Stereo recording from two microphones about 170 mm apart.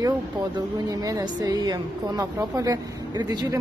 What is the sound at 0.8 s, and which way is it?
A woman's voice, 20° right (ahead or behind).